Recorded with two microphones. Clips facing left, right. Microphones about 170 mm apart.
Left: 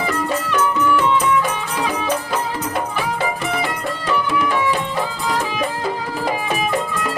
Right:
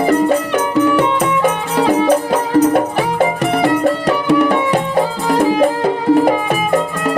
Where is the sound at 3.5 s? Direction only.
65° right (ahead or behind).